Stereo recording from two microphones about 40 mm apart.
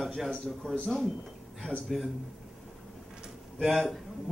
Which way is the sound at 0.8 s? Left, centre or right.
Centre.